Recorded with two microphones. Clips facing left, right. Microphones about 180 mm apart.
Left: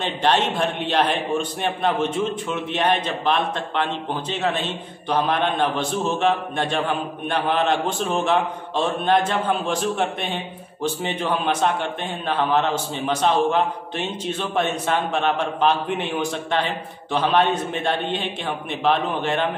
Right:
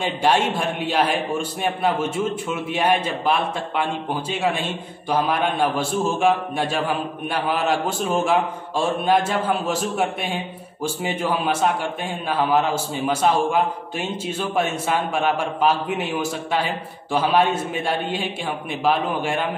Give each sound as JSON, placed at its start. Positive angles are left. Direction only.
{"t": 0.0, "sound": "a man's voice", "side_deg": -10}